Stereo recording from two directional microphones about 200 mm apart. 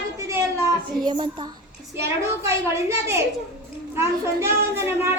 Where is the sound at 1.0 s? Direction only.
20° right (ahead or behind).